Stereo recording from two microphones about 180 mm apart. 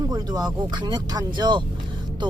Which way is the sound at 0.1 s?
20° right (ahead or behind).